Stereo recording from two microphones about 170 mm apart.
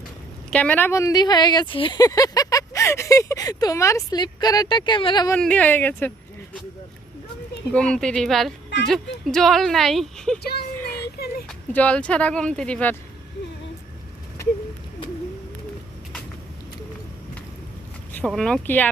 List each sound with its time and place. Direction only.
0.5 s speech: 10° left (ahead or behind); by 5.3 s 25° left (ahead or behind)
5.3 s speech: 10° left (ahead or behind)
7.7 s speech: 5° left (ahead or behind)
10.4 s speech: 70° left (ahead or behind)
10.8 s a sound: 15° left (ahead or behind)
11.4 s speech: 10° left (ahead or behind)
18.1 s speech: 5° left (ahead or behind)